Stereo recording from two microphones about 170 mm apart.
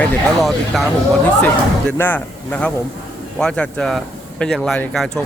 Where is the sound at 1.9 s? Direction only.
10° left (ahead or behind).